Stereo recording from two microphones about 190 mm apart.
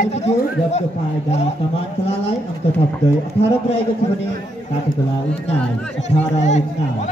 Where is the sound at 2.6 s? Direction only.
30° left (ahead or behind).